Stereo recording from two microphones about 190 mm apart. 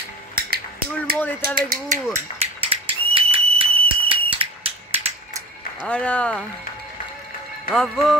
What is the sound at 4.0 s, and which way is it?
Fire alarm, 30° right (ahead or behind).